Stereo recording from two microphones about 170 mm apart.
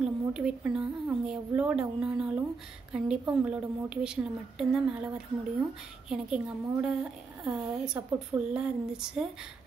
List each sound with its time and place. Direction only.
0.0 s a woman's voice: 5° right (ahead or behind)